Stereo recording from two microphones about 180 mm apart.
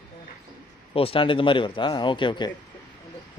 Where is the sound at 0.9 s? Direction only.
30° left (ahead or behind).